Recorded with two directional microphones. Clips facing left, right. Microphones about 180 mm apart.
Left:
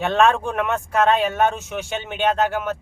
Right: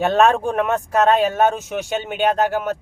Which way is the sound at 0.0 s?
40° right (ahead or behind).